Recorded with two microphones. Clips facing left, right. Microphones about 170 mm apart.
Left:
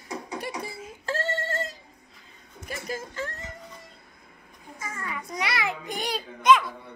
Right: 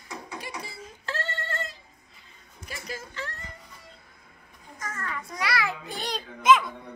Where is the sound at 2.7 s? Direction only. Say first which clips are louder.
Left 4 dB; 50° left (ahead or behind).